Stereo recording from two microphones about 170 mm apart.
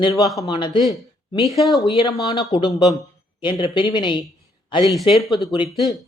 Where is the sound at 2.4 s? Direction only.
20° left (ahead or behind).